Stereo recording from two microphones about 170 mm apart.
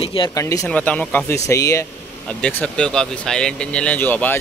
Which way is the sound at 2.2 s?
5° left (ahead or behind).